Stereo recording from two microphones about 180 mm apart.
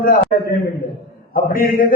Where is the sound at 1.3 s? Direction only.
50° left (ahead or behind).